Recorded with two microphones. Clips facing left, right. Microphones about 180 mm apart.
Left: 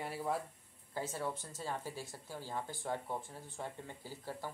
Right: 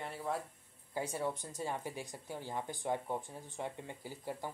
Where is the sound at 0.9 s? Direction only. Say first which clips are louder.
Right 2 dB; 15° right (ahead or behind).